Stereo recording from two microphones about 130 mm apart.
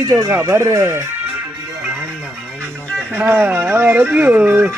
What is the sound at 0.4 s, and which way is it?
Speech, 20° right (ahead or behind).